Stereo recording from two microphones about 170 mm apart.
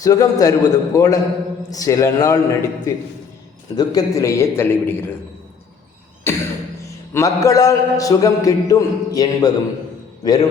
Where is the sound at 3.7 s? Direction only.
20° left (ahead or behind).